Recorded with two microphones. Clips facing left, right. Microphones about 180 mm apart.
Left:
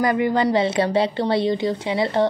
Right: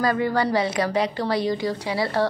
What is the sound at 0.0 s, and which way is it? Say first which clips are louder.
A woman's voice: left 3 dB; 20° left (ahead or behind).